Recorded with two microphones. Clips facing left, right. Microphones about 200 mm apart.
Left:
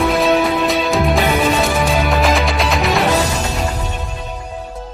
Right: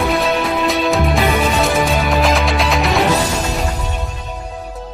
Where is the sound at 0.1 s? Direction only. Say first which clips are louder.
Left 3 dB; centre (ahead or behind).